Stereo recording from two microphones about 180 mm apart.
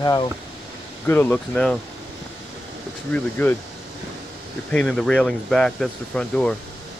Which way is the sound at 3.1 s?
10° left (ahead or behind).